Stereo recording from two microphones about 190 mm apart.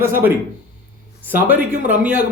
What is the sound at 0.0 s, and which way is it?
Speech, 10° right (ahead or behind).